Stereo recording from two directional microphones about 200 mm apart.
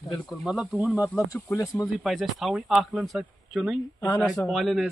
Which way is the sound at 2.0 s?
Centre (ahead or behind).